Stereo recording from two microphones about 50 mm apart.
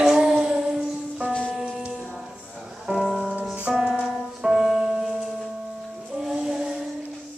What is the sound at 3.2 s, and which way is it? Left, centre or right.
Music, right.